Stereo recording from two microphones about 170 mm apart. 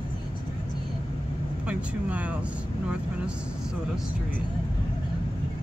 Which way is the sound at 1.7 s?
5° right (ahead or behind).